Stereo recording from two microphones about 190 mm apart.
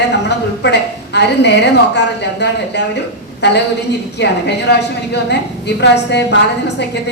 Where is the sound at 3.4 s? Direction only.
65° left (ahead or behind).